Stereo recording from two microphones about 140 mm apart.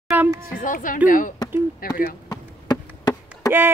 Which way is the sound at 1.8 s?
90° left.